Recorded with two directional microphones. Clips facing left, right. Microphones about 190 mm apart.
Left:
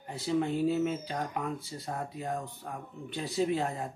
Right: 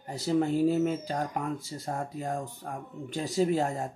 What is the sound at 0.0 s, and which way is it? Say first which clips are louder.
Speech: right 3 dB; 40° right (ahead or behind).